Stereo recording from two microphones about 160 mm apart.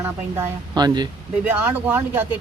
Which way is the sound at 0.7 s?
25° right (ahead or behind).